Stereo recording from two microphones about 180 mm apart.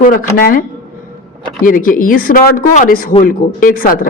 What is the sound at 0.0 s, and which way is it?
Speech, 50° left (ahead or behind).